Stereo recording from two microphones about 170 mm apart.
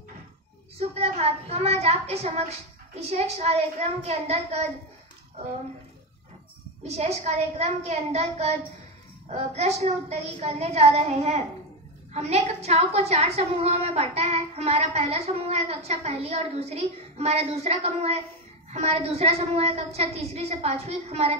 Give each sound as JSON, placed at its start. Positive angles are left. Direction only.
{"t": 0.7, "sound": "a woman's voice", "side_deg": -35}
{"t": 6.8, "sound": "a woman's voice", "side_deg": -40}